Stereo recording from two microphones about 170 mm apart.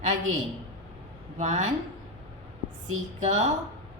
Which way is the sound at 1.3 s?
45° right (ahead or behind).